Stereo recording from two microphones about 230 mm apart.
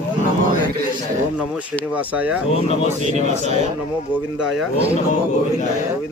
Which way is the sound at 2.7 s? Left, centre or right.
Left.